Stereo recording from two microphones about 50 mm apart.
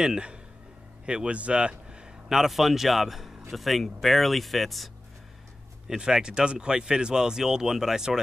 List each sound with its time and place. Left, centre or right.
0.0 s speech: centre
2.2 s speech: centre
5.9 s speech: centre